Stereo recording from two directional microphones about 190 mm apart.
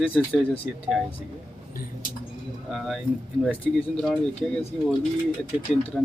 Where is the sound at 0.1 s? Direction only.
Centre (ahead or behind).